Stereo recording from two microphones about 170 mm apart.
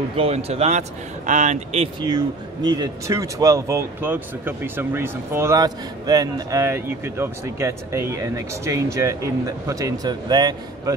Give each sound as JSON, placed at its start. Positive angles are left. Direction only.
{"t": 0.2, "sound": "a man's voice", "side_deg": -35}
{"t": 2.0, "sound": "speech", "side_deg": -25}